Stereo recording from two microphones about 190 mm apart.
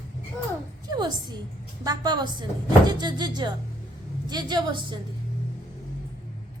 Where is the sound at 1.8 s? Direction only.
20° right (ahead or behind).